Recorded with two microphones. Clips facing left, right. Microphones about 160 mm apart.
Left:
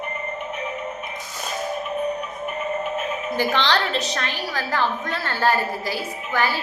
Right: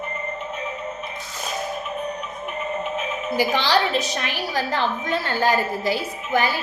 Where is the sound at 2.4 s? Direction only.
5° left (ahead or behind).